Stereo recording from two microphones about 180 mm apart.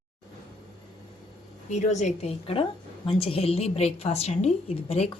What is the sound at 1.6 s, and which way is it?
A woman's voice, 40° left (ahead or behind).